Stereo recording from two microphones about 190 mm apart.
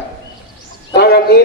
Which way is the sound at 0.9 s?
60° left (ahead or behind).